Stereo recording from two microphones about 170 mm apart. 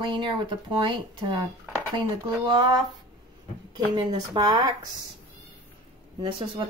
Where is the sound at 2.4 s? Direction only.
25° right (ahead or behind).